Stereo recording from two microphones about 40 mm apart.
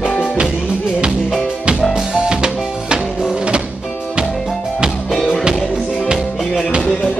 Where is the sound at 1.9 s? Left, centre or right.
Right.